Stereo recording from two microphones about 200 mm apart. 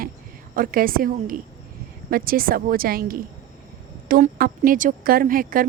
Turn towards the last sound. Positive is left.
turn(degrees=-45)  # may be behind; listen again after turning